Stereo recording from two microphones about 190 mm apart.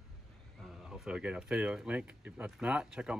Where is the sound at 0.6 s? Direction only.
Centre (ahead or behind).